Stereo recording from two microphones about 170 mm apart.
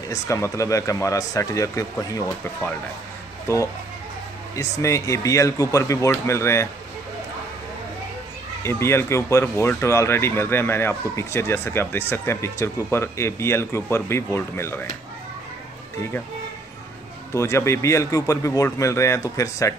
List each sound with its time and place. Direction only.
0.1 s speech: 20° left (ahead or behind)
4.6 s speech: 15° left (ahead or behind)
8.6 s speech: 15° left (ahead or behind)
17.3 s speech: 15° left (ahead or behind)